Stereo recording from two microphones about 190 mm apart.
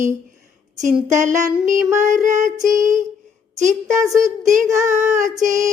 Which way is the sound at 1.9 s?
40° right (ahead or behind).